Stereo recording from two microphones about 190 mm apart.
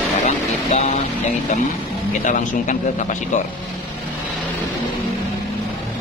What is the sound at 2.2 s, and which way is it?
Speech, 40° left (ahead or behind).